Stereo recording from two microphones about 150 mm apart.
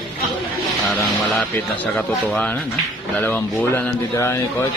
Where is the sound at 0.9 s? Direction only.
5° left (ahead or behind).